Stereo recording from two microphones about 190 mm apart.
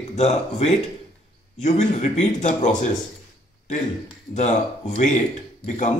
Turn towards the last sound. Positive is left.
turn(degrees=40)  # may be behind; listen again after turning